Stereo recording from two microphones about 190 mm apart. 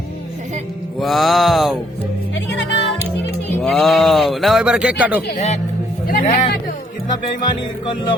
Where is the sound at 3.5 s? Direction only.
5° left (ahead or behind).